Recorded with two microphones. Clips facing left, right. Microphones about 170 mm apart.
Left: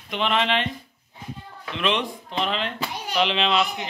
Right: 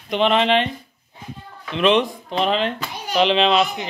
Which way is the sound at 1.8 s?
35° right (ahead or behind).